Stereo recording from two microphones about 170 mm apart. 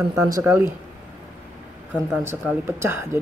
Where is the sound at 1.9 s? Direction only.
10° right (ahead or behind).